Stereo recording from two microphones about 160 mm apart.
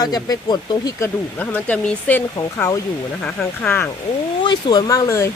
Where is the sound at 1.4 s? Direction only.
10° left (ahead or behind).